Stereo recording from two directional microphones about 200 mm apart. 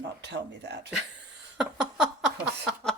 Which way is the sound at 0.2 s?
60° right (ahead or behind).